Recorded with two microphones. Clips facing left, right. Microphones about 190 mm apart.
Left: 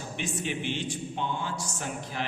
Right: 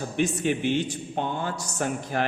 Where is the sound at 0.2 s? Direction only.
45° right (ahead or behind).